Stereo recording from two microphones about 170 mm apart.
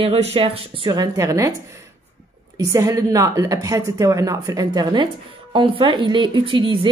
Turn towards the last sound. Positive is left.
turn(degrees=-30)  # may be behind; listen again after turning